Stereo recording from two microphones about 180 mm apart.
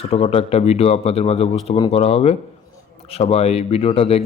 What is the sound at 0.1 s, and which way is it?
Speech, 35° left (ahead or behind).